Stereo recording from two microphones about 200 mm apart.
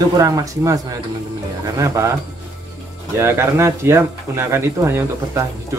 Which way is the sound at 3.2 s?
10° right (ahead or behind).